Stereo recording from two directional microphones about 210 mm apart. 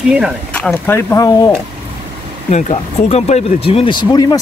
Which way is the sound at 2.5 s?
30° left (ahead or behind).